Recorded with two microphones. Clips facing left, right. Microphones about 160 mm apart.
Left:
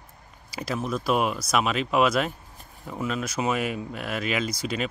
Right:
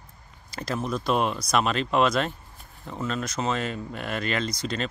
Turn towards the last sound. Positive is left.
turn(degrees=10)  # may be behind; listen again after turning